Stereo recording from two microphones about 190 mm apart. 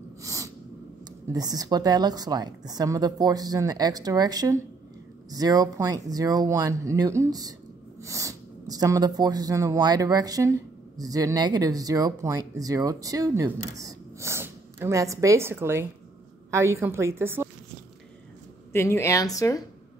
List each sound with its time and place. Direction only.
0.2 s sneeze: 15° right (ahead or behind)
1.3 s a woman's voice: 20° right (ahead or behind)
18.7 s speech: 15° left (ahead or behind)